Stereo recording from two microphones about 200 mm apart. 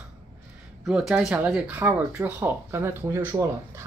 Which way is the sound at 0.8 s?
5° right (ahead or behind).